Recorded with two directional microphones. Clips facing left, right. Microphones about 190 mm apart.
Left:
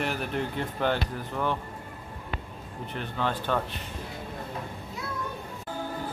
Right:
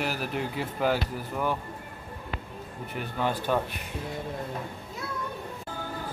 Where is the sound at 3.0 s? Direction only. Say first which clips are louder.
Right 1 dB; 10° right (ahead or behind).